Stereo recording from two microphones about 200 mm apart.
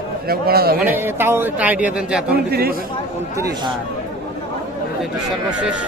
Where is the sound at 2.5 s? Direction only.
50° right (ahead or behind).